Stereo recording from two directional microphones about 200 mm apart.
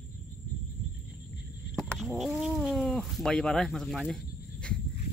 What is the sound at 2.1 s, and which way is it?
Speech, 5° right (ahead or behind).